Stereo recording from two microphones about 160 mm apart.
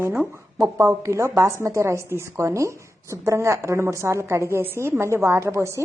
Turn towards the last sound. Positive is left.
turn(degrees=-15)  # may be behind; listen again after turning